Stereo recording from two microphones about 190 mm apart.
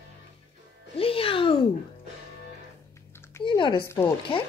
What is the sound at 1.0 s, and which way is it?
Music, 30° left (ahead or behind).